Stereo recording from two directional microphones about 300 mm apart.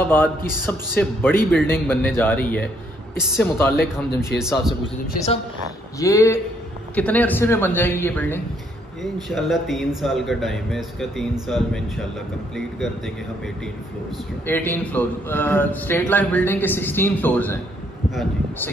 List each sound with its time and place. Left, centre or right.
0.0 s speech: centre
5.0 s a woman's voice: left
5.9 s speech: centre
14.1 s speech: centre